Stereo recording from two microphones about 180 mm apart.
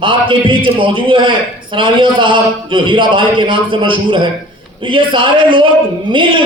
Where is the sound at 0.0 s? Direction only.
25° right (ahead or behind).